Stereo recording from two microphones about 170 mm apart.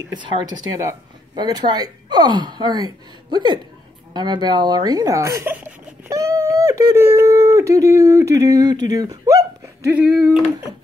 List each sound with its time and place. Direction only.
0.1 s speech: 25° right (ahead or behind)
9.9 s speech: 5° right (ahead or behind)